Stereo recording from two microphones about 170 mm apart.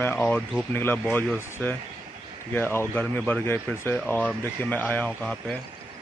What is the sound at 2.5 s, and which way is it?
A man's voice, 10° left (ahead or behind).